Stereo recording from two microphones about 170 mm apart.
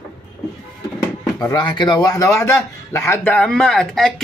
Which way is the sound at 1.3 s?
25° left (ahead or behind).